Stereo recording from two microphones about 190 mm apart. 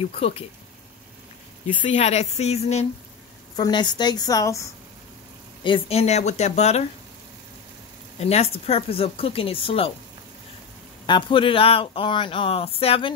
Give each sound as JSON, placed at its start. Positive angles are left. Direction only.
{"t": 1.8, "sound": "speech", "side_deg": 35}
{"t": 3.5, "sound": "speech", "side_deg": 20}
{"t": 5.6, "sound": "speech", "side_deg": 30}
{"t": 8.2, "sound": "speech", "side_deg": 35}
{"t": 11.1, "sound": "speech", "side_deg": 25}